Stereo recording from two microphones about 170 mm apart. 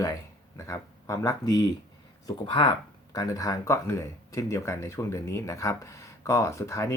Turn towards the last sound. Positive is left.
turn(degrees=15)  # may be behind; listen again after turning